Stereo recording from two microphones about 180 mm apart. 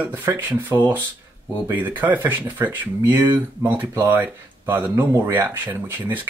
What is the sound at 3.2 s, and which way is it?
Speech, 20° right (ahead or behind).